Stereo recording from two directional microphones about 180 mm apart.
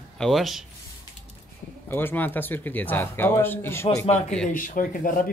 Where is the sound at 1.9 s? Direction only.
10° left (ahead or behind).